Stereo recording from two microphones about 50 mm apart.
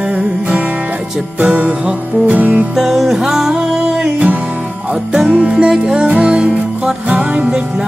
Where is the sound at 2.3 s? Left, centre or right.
Right.